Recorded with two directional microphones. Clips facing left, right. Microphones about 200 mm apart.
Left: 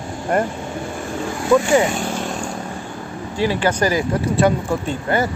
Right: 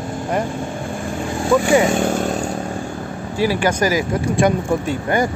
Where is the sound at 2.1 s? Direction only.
45° right (ahead or behind).